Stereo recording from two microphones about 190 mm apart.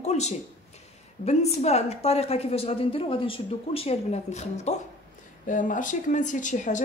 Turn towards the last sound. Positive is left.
turn(degrees=40)  # may be behind; listen again after turning